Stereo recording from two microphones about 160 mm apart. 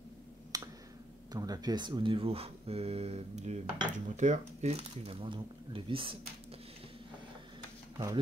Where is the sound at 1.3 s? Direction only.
25° right (ahead or behind).